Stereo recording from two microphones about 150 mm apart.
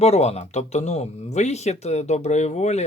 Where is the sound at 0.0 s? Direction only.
45° left (ahead or behind).